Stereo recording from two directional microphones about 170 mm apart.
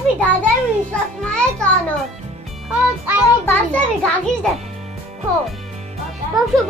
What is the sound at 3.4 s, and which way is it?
A child's voice, 5° left (ahead or behind).